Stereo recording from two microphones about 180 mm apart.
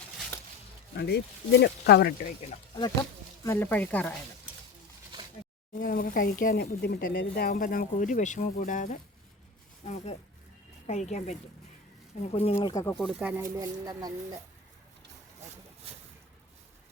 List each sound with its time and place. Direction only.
0.9 s speech: 65° left (ahead or behind)
3.4 s speech: 15° left (ahead or behind)
5.7 s speech: 50° left (ahead or behind); by 12.7 s 35° left (ahead or behind)
12.9 s speech: centre (ahead or behind); by 14.3 s 20° right (ahead or behind)